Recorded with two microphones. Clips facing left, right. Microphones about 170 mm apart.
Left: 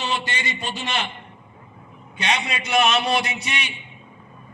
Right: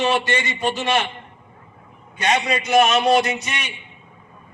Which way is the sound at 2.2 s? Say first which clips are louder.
Right 5 dB; 45° right (ahead or behind).